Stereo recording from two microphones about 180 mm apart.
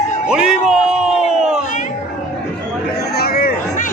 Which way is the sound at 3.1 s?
60° left (ahead or behind).